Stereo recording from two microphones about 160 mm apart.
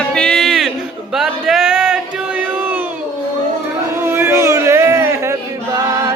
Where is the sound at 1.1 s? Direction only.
Centre (ahead or behind).